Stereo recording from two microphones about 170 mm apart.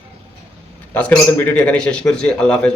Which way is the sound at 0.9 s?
10° left (ahead or behind).